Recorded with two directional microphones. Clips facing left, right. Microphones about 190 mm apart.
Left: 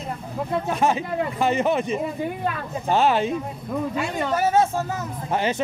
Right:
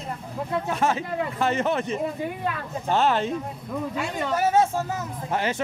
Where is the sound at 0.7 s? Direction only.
15° left (ahead or behind).